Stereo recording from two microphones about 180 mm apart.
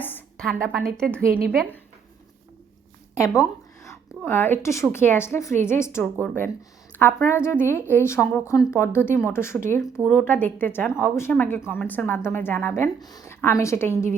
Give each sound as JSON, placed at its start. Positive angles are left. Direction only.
{"t": 0.0, "sound": "a sound", "side_deg": 5}
{"t": 1.5, "sound": "speech", "side_deg": 5}
{"t": 3.2, "sound": "speech", "side_deg": 20}